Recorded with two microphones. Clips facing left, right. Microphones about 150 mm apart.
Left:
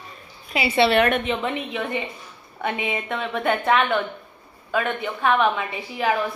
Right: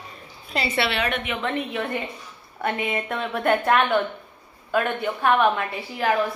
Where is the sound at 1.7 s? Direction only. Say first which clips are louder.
Even; 5° left (ahead or behind).